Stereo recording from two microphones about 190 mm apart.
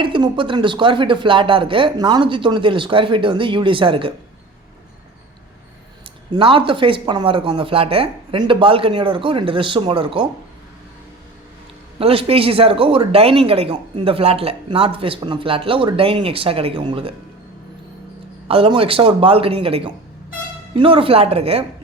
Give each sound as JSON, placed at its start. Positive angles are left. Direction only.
{"t": 0.0, "sound": "speech", "side_deg": -25}
{"t": 6.3, "sound": "speech", "side_deg": -25}
{"t": 11.9, "sound": "speech", "side_deg": -30}
{"t": 18.4, "sound": "speech", "side_deg": -30}